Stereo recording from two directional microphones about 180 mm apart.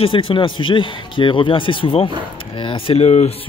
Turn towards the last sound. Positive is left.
turn(degrees=35)  # may be behind; listen again after turning